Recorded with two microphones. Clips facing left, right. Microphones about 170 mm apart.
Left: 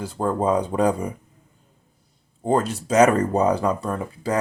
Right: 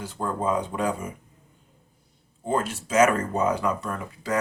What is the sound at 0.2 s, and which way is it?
Speech, 35° left (ahead or behind).